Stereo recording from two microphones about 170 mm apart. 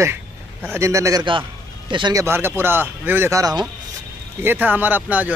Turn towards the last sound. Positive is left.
turn(degrees=-10)  # may be behind; listen again after turning